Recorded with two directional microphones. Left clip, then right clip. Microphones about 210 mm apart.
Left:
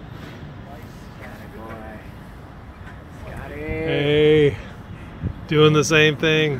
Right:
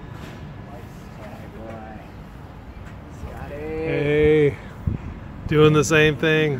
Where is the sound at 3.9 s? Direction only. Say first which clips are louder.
Left 2 dB; 10° left (ahead or behind).